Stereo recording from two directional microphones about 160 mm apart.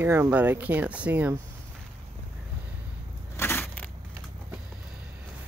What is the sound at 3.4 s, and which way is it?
Crushing, 15° left (ahead or behind).